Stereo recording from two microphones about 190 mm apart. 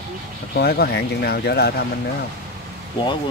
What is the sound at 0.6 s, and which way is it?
Speech, 60° left (ahead or behind).